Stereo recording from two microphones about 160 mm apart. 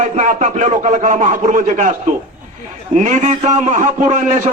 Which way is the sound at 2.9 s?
50° right (ahead or behind).